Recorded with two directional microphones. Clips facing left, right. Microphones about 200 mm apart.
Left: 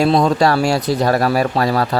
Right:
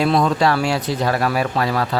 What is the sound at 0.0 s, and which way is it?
Speech, 35° left (ahead or behind).